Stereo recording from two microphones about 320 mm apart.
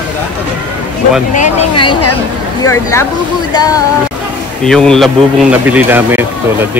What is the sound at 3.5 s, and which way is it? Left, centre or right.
Speech, centre.